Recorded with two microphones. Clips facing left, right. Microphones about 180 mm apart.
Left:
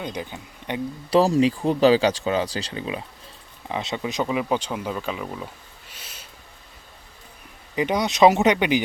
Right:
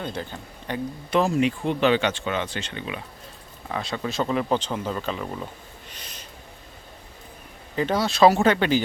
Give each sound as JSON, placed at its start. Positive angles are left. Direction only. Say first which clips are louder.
{"t": 0.0, "sound": "speech", "louder": "even", "side_deg": 15}
{"t": 1.1, "sound": "speech", "louder": "left 4 dB", "side_deg": 35}
{"t": 3.7, "sound": "speech", "louder": "left 1 dB", "side_deg": 20}
{"t": 5.9, "sound": "a sound", "louder": "even", "side_deg": 5}
{"t": 7.8, "sound": "speech", "louder": "left 1 dB", "side_deg": 15}